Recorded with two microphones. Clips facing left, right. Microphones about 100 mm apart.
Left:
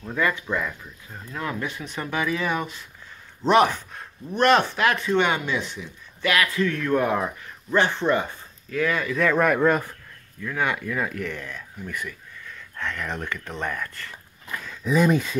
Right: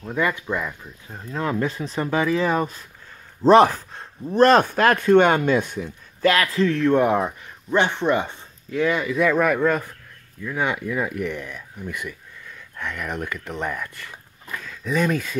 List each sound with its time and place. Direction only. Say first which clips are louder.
0.0 s speech: right 1 dB; 15° right (ahead or behind)
1.3 s speech: right 6 dB; 30° right (ahead or behind); by 5.9 s 45° right (ahead or behind)
6.2 s a man's voice: right 4 dB; 35° right (ahead or behind); by 9.3 s 15° right (ahead or behind)
9.3 s speech: left 2 dB; centre (ahead or behind)
10.4 s speech: right 1 dB; 15° right (ahead or behind)
14.5 s speech: left 2 dB; 5° left (ahead or behind)